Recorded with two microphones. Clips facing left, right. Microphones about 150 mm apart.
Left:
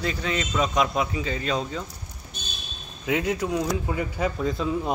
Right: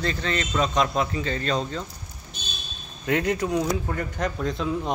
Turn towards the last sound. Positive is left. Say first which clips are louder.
# left 1 dB
turn(degrees=0)  # may be behind; listen again after turning